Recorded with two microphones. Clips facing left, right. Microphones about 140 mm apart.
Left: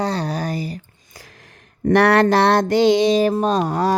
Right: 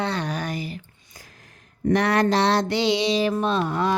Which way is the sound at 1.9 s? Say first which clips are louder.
Left 6 dB; 65° left (ahead or behind).